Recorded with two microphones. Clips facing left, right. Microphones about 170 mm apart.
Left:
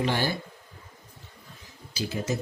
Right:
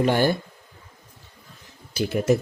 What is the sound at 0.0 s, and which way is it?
Speech, 50° right (ahead or behind).